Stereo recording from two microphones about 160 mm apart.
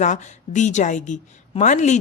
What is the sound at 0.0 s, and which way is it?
Speech, 50° left (ahead or behind).